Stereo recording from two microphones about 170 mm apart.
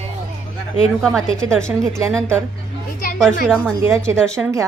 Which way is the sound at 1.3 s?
5° left (ahead or behind).